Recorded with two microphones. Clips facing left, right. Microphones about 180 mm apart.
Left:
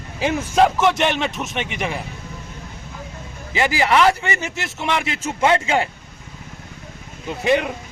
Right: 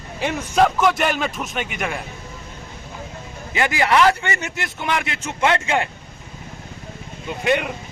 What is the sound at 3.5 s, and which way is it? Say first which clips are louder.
A man's voice: left 1 dB; 30° left (ahead or behind).